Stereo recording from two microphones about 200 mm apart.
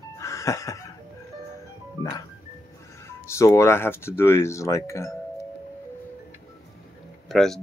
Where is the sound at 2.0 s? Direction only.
25° right (ahead or behind).